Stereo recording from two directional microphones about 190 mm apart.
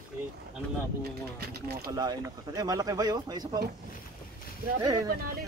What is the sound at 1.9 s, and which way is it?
Speech, 20° right (ahead or behind).